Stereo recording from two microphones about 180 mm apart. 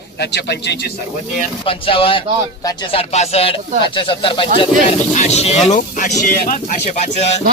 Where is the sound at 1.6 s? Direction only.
30° left (ahead or behind).